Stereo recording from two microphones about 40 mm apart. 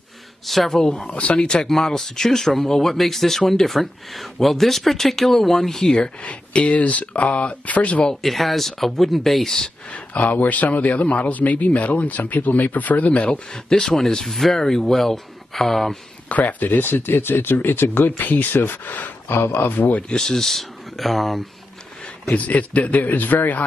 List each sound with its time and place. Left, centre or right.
0.5 s speech: centre
0.7 s speech: centre
1.6 s speech: centre
5.9 s a man's voice: left
8.2 s speech: centre
9.9 s a man's voice: left
13.5 s speech: centre
16.3 s speech: left
19.2 s speech: left
20.1 s speech: left
20.3 s speech: centre
22.3 s a man's voice: left